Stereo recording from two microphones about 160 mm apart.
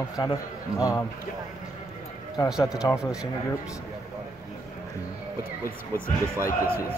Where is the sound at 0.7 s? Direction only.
20° left (ahead or behind).